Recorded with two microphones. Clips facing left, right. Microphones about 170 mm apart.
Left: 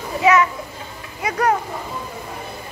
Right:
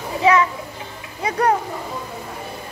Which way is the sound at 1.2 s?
30° right (ahead or behind).